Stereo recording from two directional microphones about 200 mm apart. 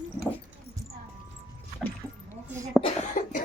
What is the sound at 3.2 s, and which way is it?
Speech, 40° left (ahead or behind).